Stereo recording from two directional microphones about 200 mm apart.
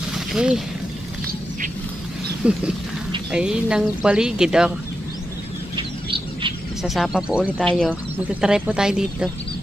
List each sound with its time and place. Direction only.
0.3 s speech: 5° right (ahead or behind)
2.4 s speech: 5° right (ahead or behind)
5.8 s bird: 25° right (ahead or behind)
6.8 s speech: centre (ahead or behind)